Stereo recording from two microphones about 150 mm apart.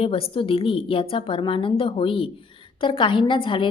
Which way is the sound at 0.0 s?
40° left (ahead or behind).